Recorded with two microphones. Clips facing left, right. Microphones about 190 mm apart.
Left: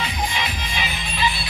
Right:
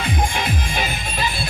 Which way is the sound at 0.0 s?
50° right (ahead or behind).